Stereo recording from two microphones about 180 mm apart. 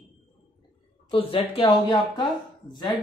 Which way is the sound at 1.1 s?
30° left (ahead or behind).